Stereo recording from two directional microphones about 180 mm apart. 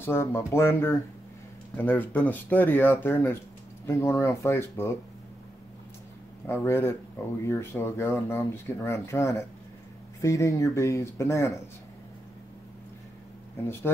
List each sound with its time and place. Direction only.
0.0 s speech: 15° left (ahead or behind)
6.4 s speech: 15° left (ahead or behind)